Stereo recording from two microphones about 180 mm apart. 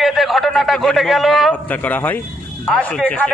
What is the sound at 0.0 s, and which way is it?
A man's voice, centre (ahead or behind).